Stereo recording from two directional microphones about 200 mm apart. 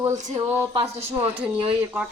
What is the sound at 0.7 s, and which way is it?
Speech, 25° right (ahead or behind).